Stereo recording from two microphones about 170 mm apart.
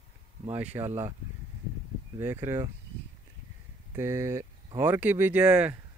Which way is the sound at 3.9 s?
15° right (ahead or behind).